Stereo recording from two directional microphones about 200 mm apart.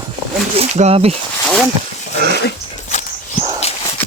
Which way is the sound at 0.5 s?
30° right (ahead or behind).